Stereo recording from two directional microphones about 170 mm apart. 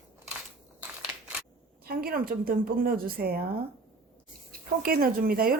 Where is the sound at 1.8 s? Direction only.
60° right (ahead or behind).